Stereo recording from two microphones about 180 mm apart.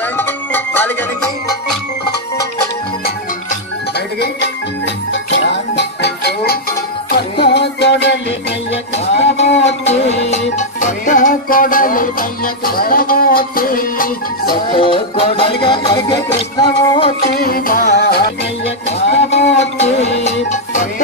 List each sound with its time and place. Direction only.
0.2 s music: 10° left (ahead or behind)
4.2 s music: 80° left
8.9 s music: 40° left (ahead or behind)
14.5 s music: 25° left (ahead or behind)
17.3 s music: 55° left (ahead or behind)
19.3 s a sound: 35° left (ahead or behind)
20.2 s music: 45° left (ahead or behind)